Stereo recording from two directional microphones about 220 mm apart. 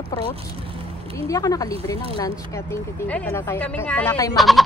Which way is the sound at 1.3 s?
15° left (ahead or behind).